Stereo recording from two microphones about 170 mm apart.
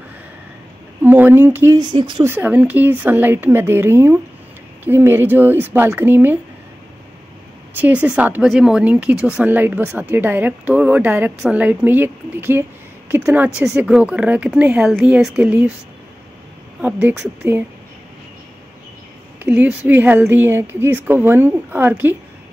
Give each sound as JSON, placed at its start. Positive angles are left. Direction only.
{"t": 1.0, "sound": "speech", "side_deg": -10}
{"t": 1.8, "sound": "speech", "side_deg": -25}
{"t": 2.2, "sound": "speech", "side_deg": -10}
{"t": 7.7, "sound": "speech", "side_deg": -10}
{"t": 16.8, "sound": "speech", "side_deg": -10}
{"t": 19.4, "sound": "speech", "side_deg": -10}